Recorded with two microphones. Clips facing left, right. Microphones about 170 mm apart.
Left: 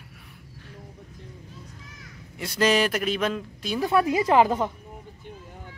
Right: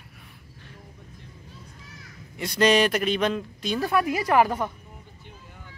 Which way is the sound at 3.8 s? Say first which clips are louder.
Left 3 dB; 25° left (ahead or behind).